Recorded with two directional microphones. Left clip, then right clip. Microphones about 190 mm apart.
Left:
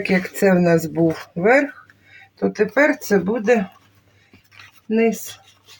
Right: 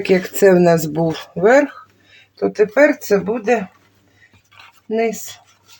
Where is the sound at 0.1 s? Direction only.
45° right (ahead or behind).